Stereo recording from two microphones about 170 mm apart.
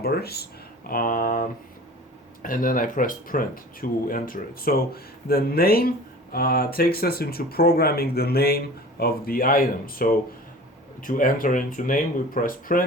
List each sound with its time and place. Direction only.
0.0 s speech: 65° left (ahead or behind)
0.9 s speech: 55° left (ahead or behind)